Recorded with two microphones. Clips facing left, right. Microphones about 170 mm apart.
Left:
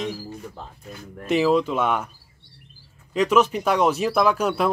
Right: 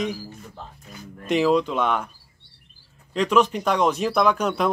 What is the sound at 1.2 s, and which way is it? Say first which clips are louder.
Speech: even; 5° left (ahead or behind).